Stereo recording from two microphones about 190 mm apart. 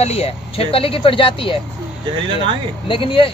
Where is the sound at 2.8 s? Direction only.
25° left (ahead or behind).